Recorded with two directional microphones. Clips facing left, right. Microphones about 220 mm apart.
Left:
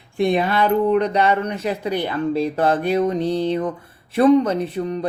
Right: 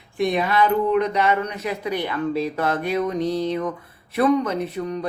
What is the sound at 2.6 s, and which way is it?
Speech, 30° left (ahead or behind).